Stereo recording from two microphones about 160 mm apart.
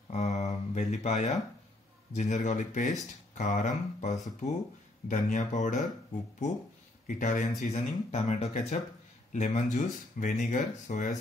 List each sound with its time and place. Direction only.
0.1 s a sound: 45° left (ahead or behind)
2.1 s speech: 45° left (ahead or behind)
7.1 s speech: 50° left (ahead or behind)